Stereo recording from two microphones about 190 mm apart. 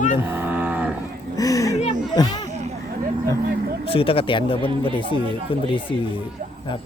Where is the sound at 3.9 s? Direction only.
30° left (ahead or behind).